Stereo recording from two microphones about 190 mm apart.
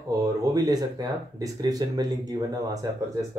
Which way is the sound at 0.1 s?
20° right (ahead or behind).